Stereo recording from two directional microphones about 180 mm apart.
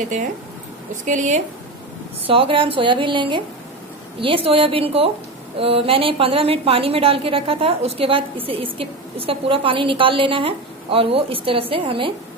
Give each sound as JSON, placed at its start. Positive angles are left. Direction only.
{"t": 1.0, "sound": "speech", "side_deg": -45}
{"t": 2.2, "sound": "a woman's voice", "side_deg": -30}